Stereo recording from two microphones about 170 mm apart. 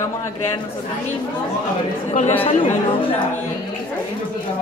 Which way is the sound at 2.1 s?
40° left (ahead or behind).